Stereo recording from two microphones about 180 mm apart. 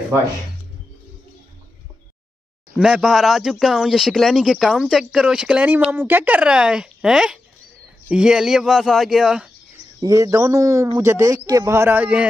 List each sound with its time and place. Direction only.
2.7 s speech: 5° right (ahead or behind)
9.9 s a man's voice: 20° right (ahead or behind)